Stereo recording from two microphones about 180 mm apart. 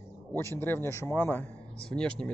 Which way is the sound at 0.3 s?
15° left (ahead or behind).